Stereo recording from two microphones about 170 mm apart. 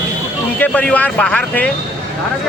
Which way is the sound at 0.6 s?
10° left (ahead or behind).